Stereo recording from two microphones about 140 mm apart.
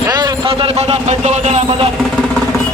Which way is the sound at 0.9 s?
50° right (ahead or behind).